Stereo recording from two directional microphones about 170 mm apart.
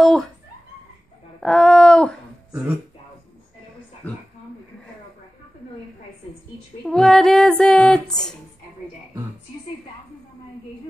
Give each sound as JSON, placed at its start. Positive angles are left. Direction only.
{"t": 0.0, "sound": "speech", "side_deg": 0}
{"t": 1.4, "sound": "speech", "side_deg": 5}
{"t": 6.8, "sound": "speech", "side_deg": 5}